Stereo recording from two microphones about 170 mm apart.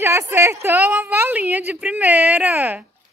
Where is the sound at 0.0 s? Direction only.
15° right (ahead or behind).